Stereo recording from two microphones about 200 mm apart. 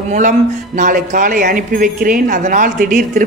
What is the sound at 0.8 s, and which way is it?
A woman's voice, 40° right (ahead or behind).